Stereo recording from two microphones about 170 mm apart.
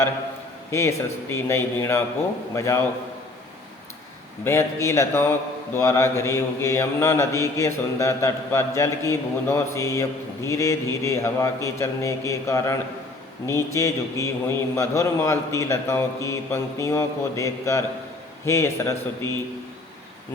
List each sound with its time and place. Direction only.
0.7 s a man's voice: 15° left (ahead or behind)
4.4 s a man's voice: 15° left (ahead or behind)